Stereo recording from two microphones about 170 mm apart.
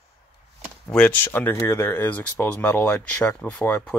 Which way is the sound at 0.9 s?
10° left (ahead or behind).